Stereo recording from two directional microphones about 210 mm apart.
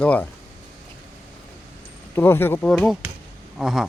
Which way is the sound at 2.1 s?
10° left (ahead or behind).